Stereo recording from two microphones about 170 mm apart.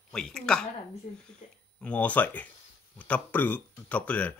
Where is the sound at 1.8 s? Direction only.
10° left (ahead or behind).